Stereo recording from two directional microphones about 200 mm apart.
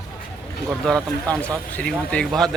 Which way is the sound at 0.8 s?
5° left (ahead or behind).